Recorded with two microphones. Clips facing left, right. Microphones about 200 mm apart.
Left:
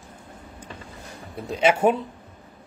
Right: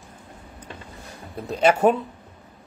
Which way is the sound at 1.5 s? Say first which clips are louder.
Right 1 dB; 10° left (ahead or behind).